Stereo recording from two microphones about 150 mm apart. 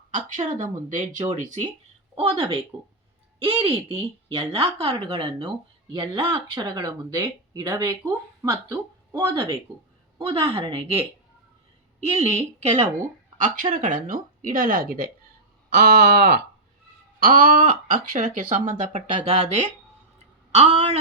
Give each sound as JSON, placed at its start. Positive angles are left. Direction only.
{"t": 0.1, "sound": "a woman's voice", "side_deg": -55}
{"t": 10.5, "sound": "speech", "side_deg": -35}
{"t": 12.0, "sound": "a woman's voice", "side_deg": -45}
{"t": 13.4, "sound": "speech", "side_deg": -60}
{"t": 15.7, "sound": "a sound", "side_deg": -90}
{"t": 17.2, "sound": "a woman's voice", "side_deg": -75}